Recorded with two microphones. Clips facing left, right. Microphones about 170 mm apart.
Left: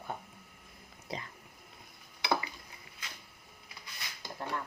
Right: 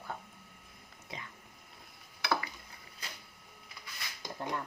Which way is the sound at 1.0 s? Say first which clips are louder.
Left 5 dB; 35° left (ahead or behind).